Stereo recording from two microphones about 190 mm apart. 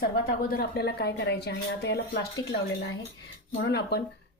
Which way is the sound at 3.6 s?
60° left (ahead or behind).